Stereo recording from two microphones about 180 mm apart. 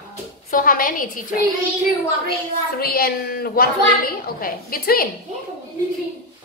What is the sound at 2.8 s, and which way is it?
A woman's voice, 55° left (ahead or behind).